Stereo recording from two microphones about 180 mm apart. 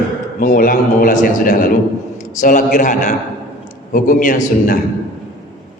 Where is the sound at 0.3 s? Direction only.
50° left (ahead or behind).